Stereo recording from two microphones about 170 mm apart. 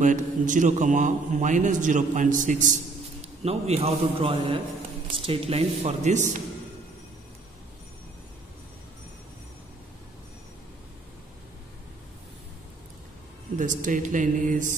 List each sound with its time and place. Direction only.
0.0 s a man's voice: 50° right (ahead or behind)
3.4 s speech: 35° right (ahead or behind)
13.6 s a man's voice: 50° right (ahead or behind)